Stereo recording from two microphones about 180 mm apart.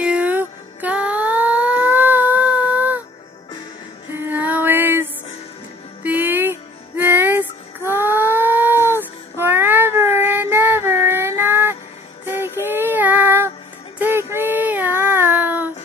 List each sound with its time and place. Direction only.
0.0 s music: 5° right (ahead or behind)
4.1 s music: 10° right (ahead or behind)
12.3 s child singing: 10° right (ahead or behind)